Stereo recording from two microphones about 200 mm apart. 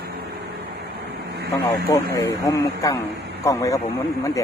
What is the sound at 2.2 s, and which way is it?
Speech, 15° left (ahead or behind).